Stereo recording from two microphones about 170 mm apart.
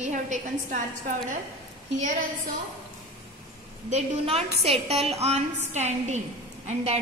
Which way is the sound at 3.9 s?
40° right (ahead or behind).